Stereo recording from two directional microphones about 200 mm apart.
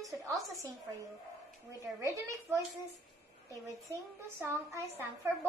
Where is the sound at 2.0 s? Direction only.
15° right (ahead or behind).